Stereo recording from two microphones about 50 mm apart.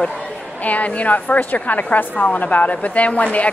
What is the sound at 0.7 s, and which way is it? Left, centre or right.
A woman's voice, left.